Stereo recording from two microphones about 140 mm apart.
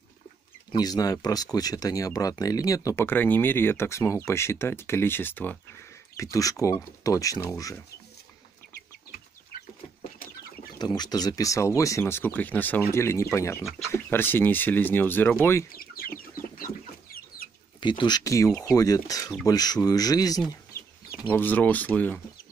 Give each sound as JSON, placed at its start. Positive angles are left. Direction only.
{"t": 0.7, "sound": "speech", "side_deg": 30}
{"t": 10.8, "sound": "speech", "side_deg": 30}
{"t": 15.7, "sound": "chicken", "side_deg": 90}
{"t": 17.7, "sound": "speech", "side_deg": 35}
{"t": 21.3, "sound": "speech", "side_deg": 10}